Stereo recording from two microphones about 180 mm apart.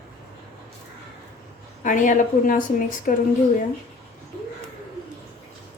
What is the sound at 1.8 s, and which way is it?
A woman's voice, 45° left (ahead or behind).